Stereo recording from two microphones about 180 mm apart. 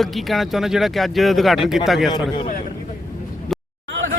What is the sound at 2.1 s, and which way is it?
Speech, 25° left (ahead or behind).